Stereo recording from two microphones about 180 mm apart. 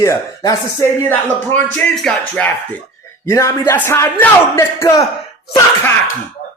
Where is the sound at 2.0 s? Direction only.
5° left (ahead or behind).